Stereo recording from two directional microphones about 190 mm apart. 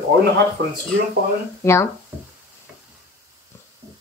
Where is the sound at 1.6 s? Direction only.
15° left (ahead or behind).